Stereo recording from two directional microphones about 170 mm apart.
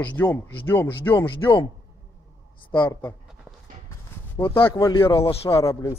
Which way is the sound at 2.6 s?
25° left (ahead or behind).